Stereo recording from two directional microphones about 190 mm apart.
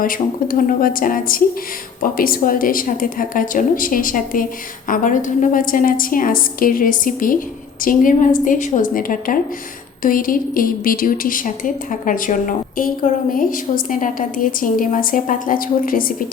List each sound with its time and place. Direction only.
0.0 s a woman's voice: 45° left (ahead or behind)